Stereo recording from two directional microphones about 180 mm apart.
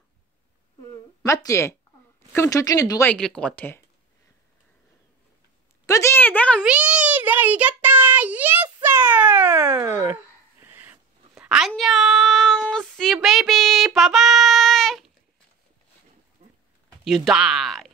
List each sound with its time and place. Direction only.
1.2 s a woman's voice: 15° left (ahead or behind)
5.9 s a woman's voice: 15° left (ahead or behind)
6.6 s child singing: 5° right (ahead or behind)
8.6 s a sound: 15° right (ahead or behind)
9.7 s dog: 15° right (ahead or behind)
10.6 s a sound: 10° right (ahead or behind)
17.0 s speech: centre (ahead or behind)